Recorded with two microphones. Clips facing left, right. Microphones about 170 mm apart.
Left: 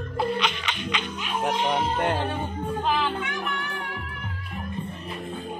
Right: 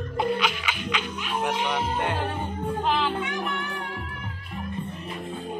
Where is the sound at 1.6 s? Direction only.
40° left (ahead or behind).